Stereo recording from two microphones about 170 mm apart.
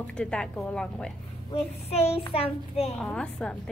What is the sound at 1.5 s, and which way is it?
A child's voice, 35° left (ahead or behind).